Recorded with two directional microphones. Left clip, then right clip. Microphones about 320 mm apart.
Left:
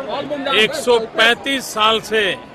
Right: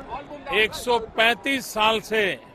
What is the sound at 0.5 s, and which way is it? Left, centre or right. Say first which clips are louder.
A man's voice: left 6 dB; right.